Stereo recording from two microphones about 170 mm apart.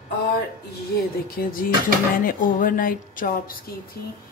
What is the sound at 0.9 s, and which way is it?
Speech, 60° left (ahead or behind).